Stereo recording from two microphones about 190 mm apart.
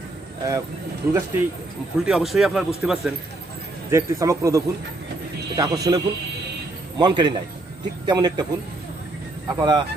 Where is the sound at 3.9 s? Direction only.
15° right (ahead or behind).